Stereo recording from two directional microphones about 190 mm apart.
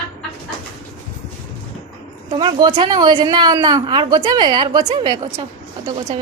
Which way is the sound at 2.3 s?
25° right (ahead or behind).